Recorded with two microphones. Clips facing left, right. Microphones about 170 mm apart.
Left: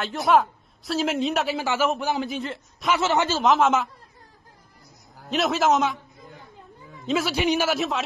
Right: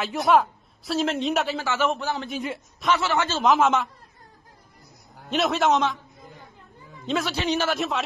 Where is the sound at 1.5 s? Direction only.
10° left (ahead or behind).